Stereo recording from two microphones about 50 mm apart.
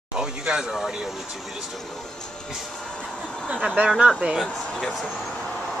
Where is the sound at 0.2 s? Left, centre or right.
Centre.